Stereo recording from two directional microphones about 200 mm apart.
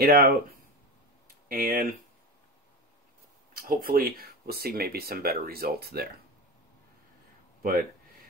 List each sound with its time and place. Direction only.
0.0 s speech: 50° right (ahead or behind)
1.5 s speech: 45° right (ahead or behind)
3.5 s speech: 45° right (ahead or behind)